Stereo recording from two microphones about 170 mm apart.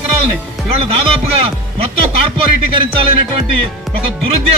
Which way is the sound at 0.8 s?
35° right (ahead or behind).